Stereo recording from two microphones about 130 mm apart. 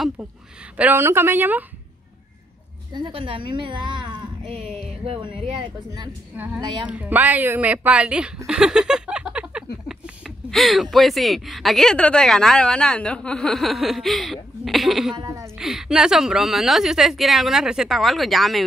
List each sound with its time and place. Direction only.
0.2 s a woman's voice: 5° right (ahead or behind)
0.7 s speech: 15° right (ahead or behind)
2.9 s speech: 40° right (ahead or behind)
6.3 s speech: 10° right (ahead or behind)
8.5 s a sound: 5° right (ahead or behind)
15.1 s a woman's voice: 25° right (ahead or behind)
15.5 s a woman's voice: 5° right (ahead or behind)